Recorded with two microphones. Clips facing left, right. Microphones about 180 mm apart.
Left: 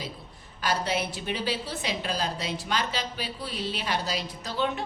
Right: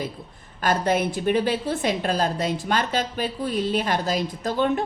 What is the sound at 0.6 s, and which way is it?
A woman's voice, 50° right (ahead or behind).